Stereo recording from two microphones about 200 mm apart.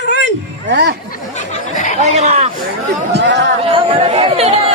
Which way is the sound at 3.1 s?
60° right (ahead or behind).